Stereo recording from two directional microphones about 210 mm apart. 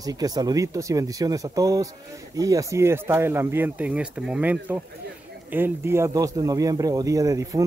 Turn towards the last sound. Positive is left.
turn(degrees=-15)  # may be behind; listen again after turning